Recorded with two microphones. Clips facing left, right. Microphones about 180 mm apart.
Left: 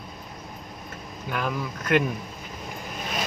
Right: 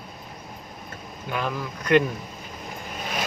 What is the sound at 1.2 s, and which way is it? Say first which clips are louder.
Speech: even; centre (ahead or behind).